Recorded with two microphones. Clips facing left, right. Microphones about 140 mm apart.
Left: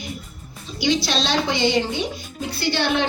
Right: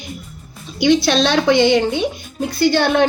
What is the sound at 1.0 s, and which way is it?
A child's voice, 55° right (ahead or behind).